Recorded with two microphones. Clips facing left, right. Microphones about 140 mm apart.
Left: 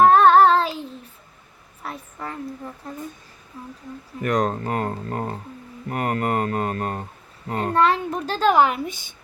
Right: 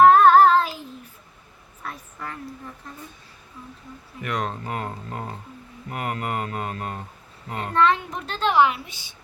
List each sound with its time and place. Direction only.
0.0 s child singing: 30° left (ahead or behind)
1.8 s a sound: 30° left (ahead or behind)
4.2 s a woman's voice: 40° left (ahead or behind)